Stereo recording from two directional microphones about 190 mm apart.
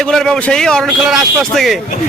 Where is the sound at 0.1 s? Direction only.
Centre (ahead or behind).